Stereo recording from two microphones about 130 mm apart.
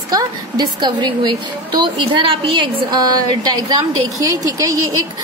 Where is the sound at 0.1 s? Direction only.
30° right (ahead or behind).